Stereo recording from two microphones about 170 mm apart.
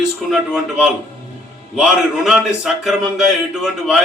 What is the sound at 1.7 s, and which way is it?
A man's voice, 5° right (ahead or behind).